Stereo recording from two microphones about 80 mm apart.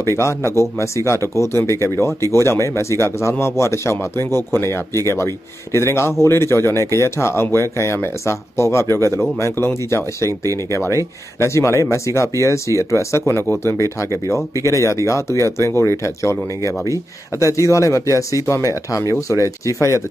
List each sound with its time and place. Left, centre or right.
0.0 s speech: left
14.3 s speech: left